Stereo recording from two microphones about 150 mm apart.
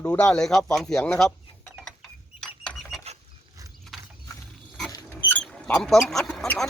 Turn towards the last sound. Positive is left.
turn(degrees=5)  # may be behind; listen again after turning